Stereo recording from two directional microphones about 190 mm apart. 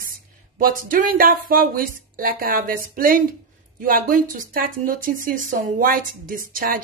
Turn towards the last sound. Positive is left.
turn(degrees=-50)  # may be behind; listen again after turning